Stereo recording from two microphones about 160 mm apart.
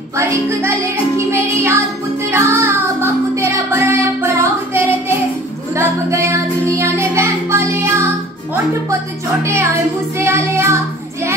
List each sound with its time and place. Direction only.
0.2 s music: 20° right (ahead or behind)
5.8 s child singing: 15° right (ahead or behind)
9.4 s child singing: 15° right (ahead or behind)